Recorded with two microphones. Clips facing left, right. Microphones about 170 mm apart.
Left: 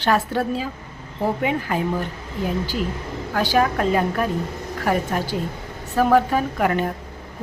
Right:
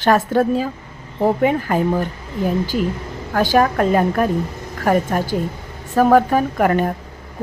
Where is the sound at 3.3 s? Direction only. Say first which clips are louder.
Right 4 dB; 45° right (ahead or behind).